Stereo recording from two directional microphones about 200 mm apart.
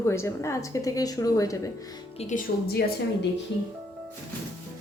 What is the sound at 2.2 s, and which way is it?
Speech, 35° left (ahead or behind).